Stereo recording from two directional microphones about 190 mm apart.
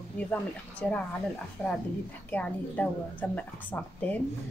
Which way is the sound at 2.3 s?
5° left (ahead or behind).